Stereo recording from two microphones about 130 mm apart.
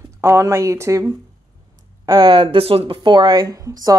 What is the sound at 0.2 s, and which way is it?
Speech, 20° right (ahead or behind).